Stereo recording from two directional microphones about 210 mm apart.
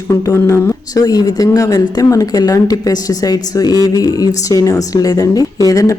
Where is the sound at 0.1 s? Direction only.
15° left (ahead or behind).